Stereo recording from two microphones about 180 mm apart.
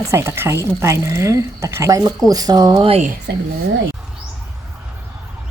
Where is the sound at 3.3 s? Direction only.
70° right (ahead or behind).